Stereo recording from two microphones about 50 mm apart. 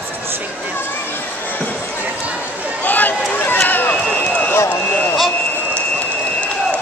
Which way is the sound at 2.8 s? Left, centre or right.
Left.